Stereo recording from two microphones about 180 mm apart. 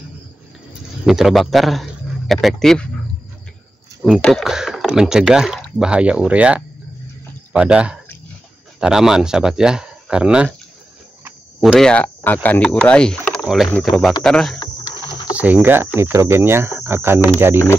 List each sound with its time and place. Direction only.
1.0 s a man's voice: centre (ahead or behind)
4.0 s speech: centre (ahead or behind)
11.6 s speech: 5° left (ahead or behind)
14.6 s cricket: 25° left (ahead or behind)
15.3 s speech: 10° right (ahead or behind)